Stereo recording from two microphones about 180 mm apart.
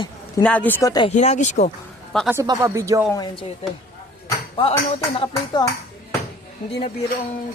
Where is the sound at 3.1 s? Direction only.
25° left (ahead or behind).